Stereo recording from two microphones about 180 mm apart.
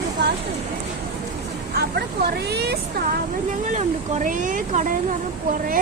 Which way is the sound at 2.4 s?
65° right (ahead or behind).